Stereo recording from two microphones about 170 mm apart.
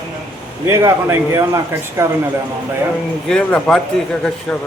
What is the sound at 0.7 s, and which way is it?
A man's voice, 15° right (ahead or behind).